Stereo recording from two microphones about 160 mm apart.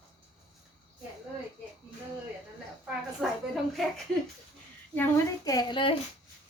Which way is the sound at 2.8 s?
Centre (ahead or behind).